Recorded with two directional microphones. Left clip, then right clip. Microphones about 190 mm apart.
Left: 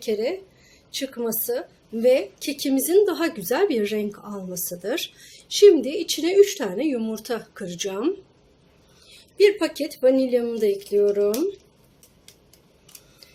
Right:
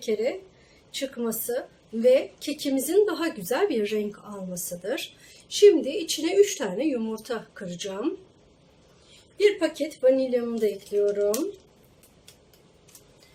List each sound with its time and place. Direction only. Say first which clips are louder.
0.0 s speech: left 2 dB; 45° left (ahead or behind)
9.4 s speech: left 4 dB; 50° left (ahead or behind)